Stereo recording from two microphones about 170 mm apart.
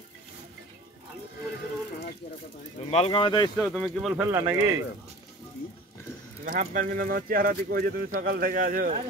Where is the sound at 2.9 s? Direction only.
35° left (ahead or behind).